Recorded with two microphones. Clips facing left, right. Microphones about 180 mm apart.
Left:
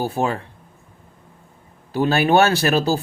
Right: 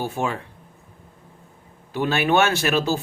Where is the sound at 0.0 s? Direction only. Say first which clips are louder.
Left 4 dB; 35° left (ahead or behind).